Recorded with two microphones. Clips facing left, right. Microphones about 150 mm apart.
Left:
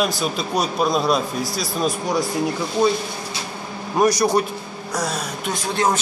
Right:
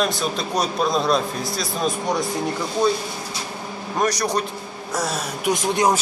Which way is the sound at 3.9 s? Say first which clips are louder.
Left 5 dB; 10° left (ahead or behind).